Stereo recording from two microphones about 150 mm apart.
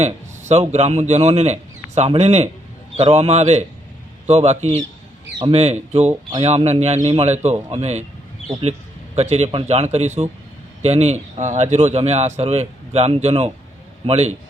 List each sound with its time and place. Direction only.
0.0 s speech: 50° right (ahead or behind)
9.1 s speech: 45° right (ahead or behind)